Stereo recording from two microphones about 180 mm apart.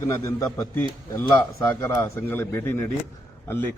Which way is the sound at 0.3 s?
15° left (ahead or behind).